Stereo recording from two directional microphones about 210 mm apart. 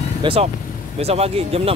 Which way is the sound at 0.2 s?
25° right (ahead or behind).